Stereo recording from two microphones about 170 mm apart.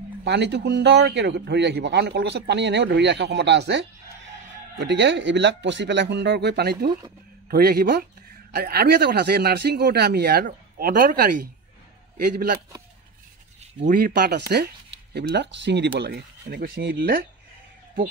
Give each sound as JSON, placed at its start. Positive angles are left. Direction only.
{"t": 0.2, "sound": "a man's voice", "side_deg": -90}
{"t": 13.8, "sound": "speech", "side_deg": -60}
{"t": 15.1, "sound": "speech", "side_deg": -90}